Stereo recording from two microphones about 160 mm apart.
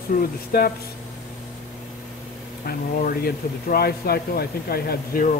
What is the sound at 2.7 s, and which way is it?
Speech, 70° left (ahead or behind).